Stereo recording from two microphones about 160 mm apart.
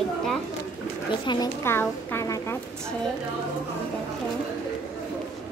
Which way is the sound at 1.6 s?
15° left (ahead or behind).